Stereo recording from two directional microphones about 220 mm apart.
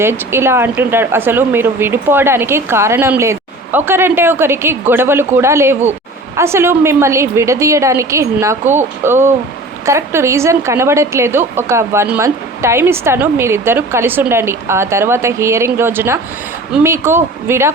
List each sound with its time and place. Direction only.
0.0 s speech: 10° right (ahead or behind)